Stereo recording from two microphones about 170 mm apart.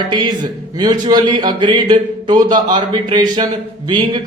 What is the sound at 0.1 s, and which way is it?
A man's voice, 25° right (ahead or behind).